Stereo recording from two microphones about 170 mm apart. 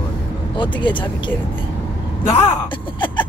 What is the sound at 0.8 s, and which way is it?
Speech, 30° left (ahead or behind).